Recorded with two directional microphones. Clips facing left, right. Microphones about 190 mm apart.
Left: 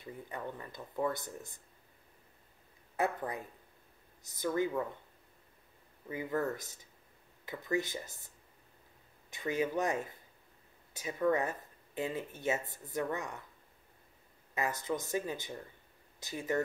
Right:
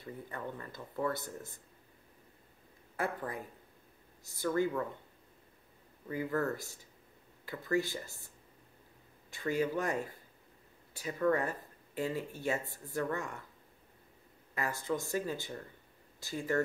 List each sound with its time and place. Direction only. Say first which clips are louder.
0.0 s speech: even; 15° left (ahead or behind)
4.2 s speech: right 1 dB; 20° left (ahead or behind)
6.0 s speech: right 1 dB; 20° left (ahead or behind)
9.3 s speech: right 1 dB; 20° left (ahead or behind)
14.5 s speech: even; 20° left (ahead or behind)